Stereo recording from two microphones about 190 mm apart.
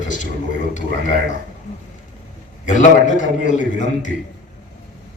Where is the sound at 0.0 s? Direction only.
40° left (ahead or behind).